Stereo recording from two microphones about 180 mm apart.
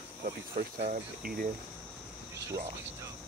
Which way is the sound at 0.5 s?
45° right (ahead or behind).